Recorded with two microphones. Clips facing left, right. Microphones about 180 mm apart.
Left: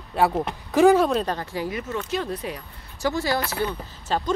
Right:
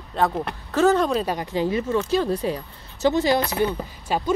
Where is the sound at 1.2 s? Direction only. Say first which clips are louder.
Right 4 dB; 15° right (ahead or behind).